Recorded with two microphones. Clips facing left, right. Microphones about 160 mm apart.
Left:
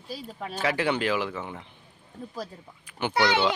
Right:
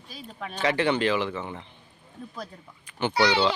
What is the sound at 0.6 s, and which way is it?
Speech, 5° left (ahead or behind).